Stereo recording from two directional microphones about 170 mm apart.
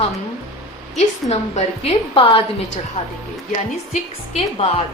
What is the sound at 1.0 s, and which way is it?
A woman's voice, 40° left (ahead or behind).